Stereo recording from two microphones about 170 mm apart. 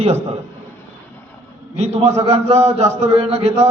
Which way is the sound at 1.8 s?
40° right (ahead or behind).